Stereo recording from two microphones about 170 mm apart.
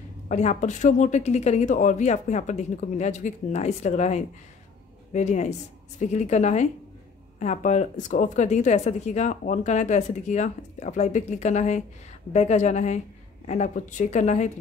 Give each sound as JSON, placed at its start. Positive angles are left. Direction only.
{"t": 0.3, "sound": "speech", "side_deg": 45}